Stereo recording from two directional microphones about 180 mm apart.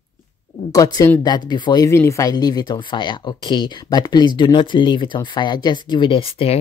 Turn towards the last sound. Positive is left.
turn(degrees=30)  # may be behind; listen again after turning